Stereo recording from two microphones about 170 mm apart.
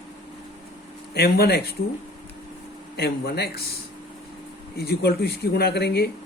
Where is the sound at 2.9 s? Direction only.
70° left (ahead or behind).